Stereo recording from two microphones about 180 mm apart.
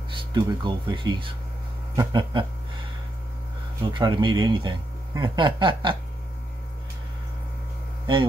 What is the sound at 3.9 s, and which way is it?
Speech, 25° right (ahead or behind).